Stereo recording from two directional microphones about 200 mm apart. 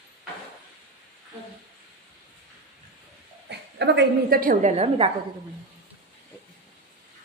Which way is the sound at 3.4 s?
60° right (ahead or behind).